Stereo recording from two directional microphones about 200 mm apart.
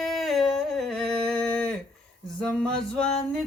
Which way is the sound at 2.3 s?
5° left (ahead or behind).